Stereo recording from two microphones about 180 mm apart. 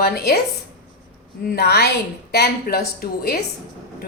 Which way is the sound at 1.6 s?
65° left (ahead or behind).